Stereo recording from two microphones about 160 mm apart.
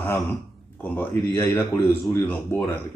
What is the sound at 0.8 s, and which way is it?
Speech, 15° left (ahead or behind).